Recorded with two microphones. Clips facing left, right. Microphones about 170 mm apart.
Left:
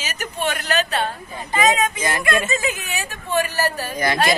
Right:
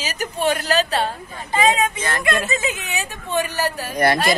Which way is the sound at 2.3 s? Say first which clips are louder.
Even; centre (ahead or behind).